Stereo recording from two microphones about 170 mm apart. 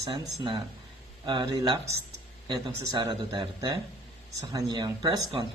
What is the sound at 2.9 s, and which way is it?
Speech, 25° right (ahead or behind).